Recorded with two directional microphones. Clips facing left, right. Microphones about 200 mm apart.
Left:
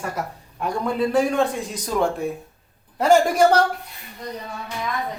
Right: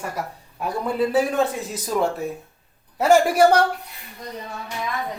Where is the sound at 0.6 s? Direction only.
5° right (ahead or behind).